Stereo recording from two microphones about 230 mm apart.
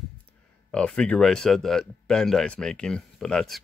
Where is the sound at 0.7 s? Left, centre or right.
Centre.